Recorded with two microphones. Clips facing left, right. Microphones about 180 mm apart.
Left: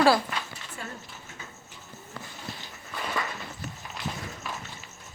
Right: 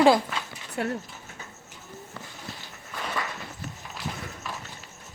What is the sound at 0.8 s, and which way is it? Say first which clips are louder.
Speech: right 12 dB; 70° right (ahead or behind).